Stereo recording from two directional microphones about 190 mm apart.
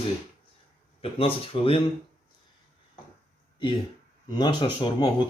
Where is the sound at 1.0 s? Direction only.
30° left (ahead or behind).